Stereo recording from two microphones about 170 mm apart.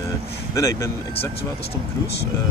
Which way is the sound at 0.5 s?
20° left (ahead or behind).